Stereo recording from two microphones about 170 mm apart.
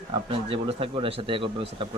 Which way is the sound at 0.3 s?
30° right (ahead or behind).